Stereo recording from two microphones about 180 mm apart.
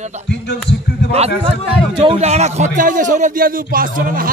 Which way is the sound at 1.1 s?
35° right (ahead or behind).